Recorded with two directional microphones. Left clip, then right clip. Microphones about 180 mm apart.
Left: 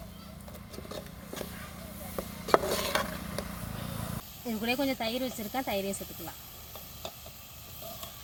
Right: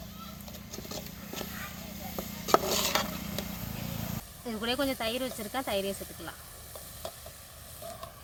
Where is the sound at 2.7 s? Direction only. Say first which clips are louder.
Right 2 dB; 30° left (ahead or behind).